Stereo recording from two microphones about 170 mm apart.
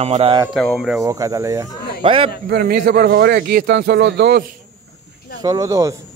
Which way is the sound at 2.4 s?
65° right (ahead or behind).